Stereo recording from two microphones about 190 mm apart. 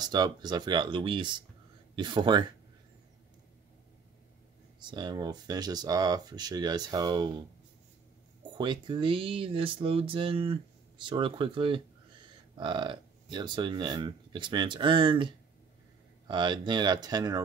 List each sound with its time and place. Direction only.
0.0 s speech: 20° right (ahead or behind)
4.7 s speech: 25° right (ahead or behind)
8.5 s speech: 25° right (ahead or behind)